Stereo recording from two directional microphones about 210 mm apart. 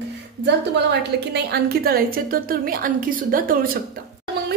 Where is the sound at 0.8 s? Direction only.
50° right (ahead or behind).